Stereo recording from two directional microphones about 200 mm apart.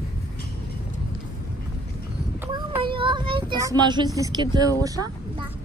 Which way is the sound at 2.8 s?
25° right (ahead or behind).